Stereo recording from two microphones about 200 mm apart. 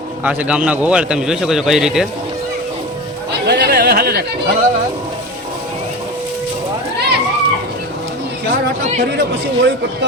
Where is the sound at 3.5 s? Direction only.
55° right (ahead or behind).